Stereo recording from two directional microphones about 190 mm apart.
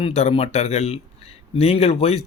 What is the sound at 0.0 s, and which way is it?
Speech, 35° left (ahead or behind).